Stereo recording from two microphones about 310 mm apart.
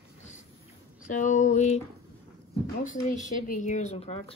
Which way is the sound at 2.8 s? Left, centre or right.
Left.